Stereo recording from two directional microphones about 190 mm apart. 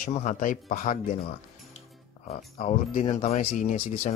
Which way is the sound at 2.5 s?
40° left (ahead or behind).